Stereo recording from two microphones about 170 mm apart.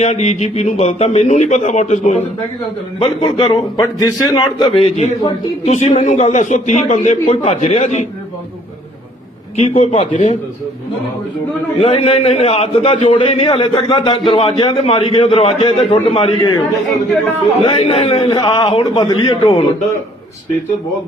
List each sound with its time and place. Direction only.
0.0 s a man's voice: 40° left (ahead or behind)
9.6 s a man's voice: 40° left (ahead or behind)
11.8 s a man's voice: 35° left (ahead or behind)
17.6 s a man's voice: 35° left (ahead or behind)